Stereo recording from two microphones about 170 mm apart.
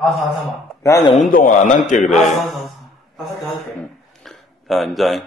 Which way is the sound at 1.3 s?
55° left (ahead or behind).